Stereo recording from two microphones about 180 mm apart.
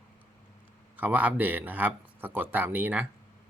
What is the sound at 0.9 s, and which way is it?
Speech, 10° right (ahead or behind).